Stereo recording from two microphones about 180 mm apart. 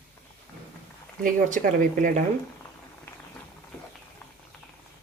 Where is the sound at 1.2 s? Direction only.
45° right (ahead or behind).